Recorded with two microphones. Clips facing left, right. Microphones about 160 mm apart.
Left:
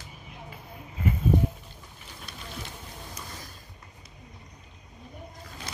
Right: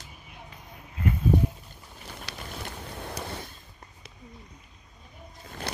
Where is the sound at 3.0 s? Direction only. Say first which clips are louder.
Right 9 dB; 65° right (ahead or behind).